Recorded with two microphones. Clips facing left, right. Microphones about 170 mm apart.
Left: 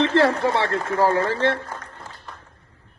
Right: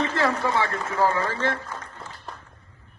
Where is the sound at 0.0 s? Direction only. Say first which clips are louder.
Left 7 dB; 70° left (ahead or behind).